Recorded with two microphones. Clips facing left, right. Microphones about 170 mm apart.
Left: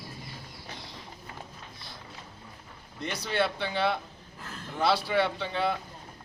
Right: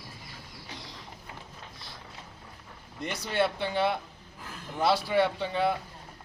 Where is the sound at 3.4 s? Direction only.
15° right (ahead or behind).